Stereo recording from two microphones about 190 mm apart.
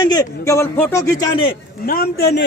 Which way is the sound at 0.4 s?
15° left (ahead or behind).